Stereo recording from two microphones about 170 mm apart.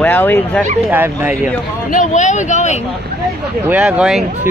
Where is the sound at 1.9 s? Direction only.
45° left (ahead or behind).